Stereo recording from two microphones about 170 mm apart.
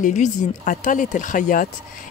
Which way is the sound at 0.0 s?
45° left (ahead or behind).